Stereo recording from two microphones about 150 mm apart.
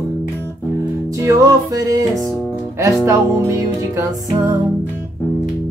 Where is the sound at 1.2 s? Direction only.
20° right (ahead or behind).